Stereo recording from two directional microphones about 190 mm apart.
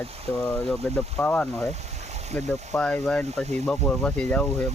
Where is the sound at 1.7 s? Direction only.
35° right (ahead or behind).